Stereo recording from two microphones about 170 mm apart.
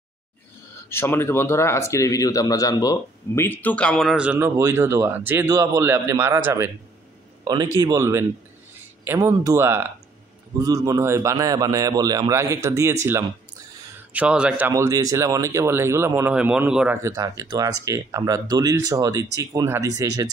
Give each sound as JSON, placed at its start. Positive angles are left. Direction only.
{"t": 0.8, "sound": "speech", "side_deg": 15}
{"t": 14.1, "sound": "speech", "side_deg": -5}
{"t": 14.7, "sound": "speech", "side_deg": -20}